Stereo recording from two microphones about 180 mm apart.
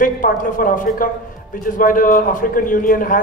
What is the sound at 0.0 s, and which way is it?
Speech, 50° left (ahead or behind).